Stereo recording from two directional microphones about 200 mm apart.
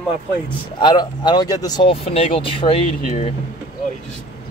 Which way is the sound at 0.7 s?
20° left (ahead or behind).